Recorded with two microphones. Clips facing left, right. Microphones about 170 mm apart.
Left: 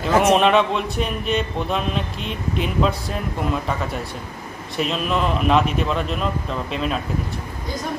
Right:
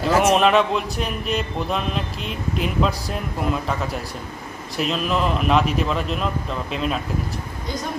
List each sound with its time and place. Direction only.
0.0 s speech: centre (ahead or behind)